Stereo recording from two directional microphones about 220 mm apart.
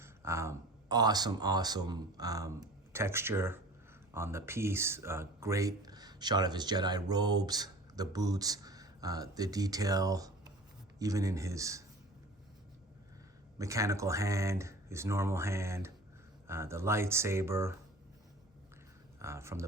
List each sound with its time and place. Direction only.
0.0 s speech: 10° right (ahead or behind)
13.6 s speech: 15° right (ahead or behind)
19.2 s speech: 10° right (ahead or behind)